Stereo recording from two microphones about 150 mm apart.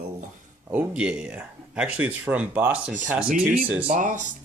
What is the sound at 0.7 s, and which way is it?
Speech, 10° right (ahead or behind).